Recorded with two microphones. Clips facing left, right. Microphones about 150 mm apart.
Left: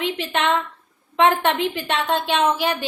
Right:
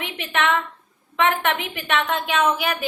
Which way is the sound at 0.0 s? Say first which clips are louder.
Left 2 dB; 30° left (ahead or behind).